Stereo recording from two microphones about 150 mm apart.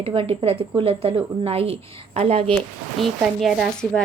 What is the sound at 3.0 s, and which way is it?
A woman's voice, centre (ahead or behind).